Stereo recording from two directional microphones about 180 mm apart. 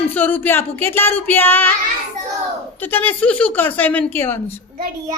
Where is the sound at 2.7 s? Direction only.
10° left (ahead or behind).